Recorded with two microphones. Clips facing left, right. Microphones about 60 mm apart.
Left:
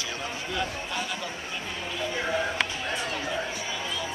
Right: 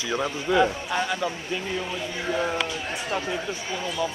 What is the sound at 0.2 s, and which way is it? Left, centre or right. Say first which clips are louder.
Speech: right 11 dB; right.